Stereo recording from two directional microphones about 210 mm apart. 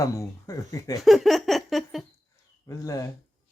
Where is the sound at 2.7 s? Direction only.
15° left (ahead or behind).